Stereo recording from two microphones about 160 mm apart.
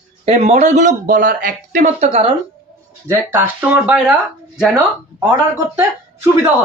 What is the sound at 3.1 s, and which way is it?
Speech, 15° right (ahead or behind).